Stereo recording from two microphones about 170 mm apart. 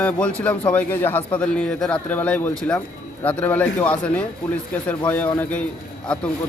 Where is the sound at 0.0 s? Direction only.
10° left (ahead or behind).